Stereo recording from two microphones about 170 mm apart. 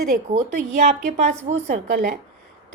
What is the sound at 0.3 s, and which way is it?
A woman's voice, 45° right (ahead or behind).